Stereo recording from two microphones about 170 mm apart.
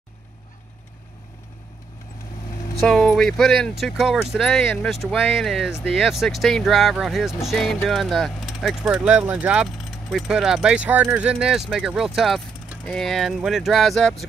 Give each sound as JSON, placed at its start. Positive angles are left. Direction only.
{"t": 2.8, "sound": "speech", "side_deg": 0}